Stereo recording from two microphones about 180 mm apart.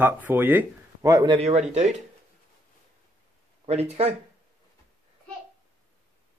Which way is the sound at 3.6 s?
35° right (ahead or behind).